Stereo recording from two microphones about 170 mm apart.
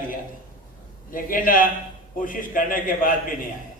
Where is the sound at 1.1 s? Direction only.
55° left (ahead or behind).